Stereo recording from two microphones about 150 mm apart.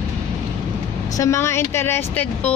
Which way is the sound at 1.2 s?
20° left (ahead or behind).